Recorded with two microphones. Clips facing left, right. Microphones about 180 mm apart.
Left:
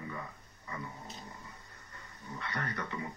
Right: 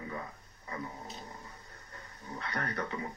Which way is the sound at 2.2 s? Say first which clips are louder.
Right 2 dB; 40° right (ahead or behind).